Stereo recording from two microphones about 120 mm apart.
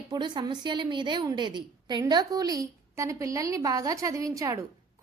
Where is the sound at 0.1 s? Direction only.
40° right (ahead or behind).